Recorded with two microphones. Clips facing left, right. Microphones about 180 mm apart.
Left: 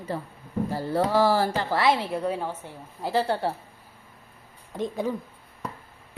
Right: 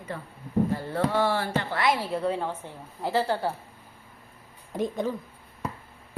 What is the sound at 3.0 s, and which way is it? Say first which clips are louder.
Speech: left 1 dB; 15° left (ahead or behind).